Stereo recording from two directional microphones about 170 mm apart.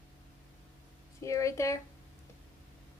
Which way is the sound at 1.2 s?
20° left (ahead or behind).